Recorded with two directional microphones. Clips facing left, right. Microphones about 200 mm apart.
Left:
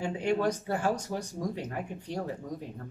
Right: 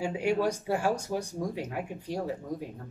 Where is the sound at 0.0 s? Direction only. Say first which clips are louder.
Right 1 dB; 10° right (ahead or behind).